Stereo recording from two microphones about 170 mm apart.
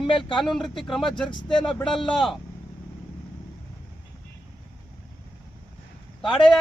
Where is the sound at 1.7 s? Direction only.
5° left (ahead or behind).